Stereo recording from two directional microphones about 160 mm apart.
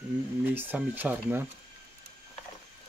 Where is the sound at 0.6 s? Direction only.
10° right (ahead or behind).